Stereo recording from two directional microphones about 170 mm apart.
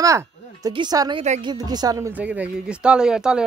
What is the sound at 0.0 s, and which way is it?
Speech, 20° right (ahead or behind).